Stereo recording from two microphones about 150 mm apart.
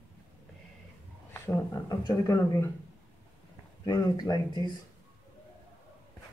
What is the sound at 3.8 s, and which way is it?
Speech, 25° left (ahead or behind).